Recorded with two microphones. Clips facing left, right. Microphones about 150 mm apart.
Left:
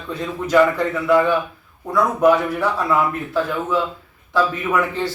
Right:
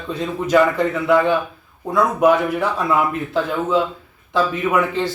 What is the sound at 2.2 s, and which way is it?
Speech, 20° right (ahead or behind).